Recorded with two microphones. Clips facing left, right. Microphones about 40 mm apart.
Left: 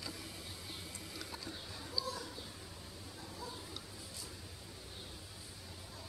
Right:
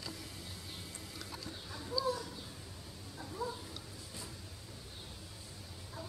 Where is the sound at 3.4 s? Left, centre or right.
Centre.